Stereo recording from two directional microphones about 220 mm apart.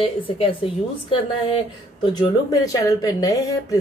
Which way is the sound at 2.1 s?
15° left (ahead or behind).